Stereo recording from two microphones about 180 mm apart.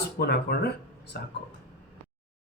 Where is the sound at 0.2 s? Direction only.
60° left (ahead or behind).